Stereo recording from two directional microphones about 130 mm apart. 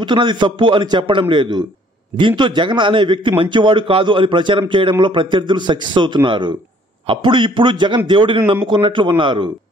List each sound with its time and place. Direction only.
0.0 s a man's voice: 35° right (ahead or behind)